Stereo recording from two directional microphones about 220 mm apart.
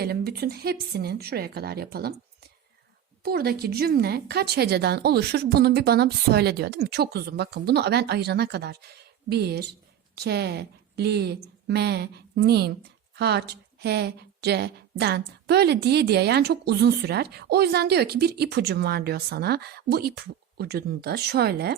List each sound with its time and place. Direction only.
0.0 s a woman's voice: 45° right (ahead or behind)
3.2 s a woman's voice: 45° right (ahead or behind)